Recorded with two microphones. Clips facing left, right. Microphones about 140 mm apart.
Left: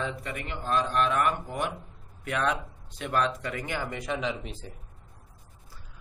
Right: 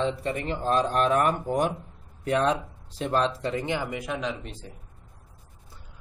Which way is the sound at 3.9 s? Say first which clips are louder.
Even; 5° right (ahead or behind).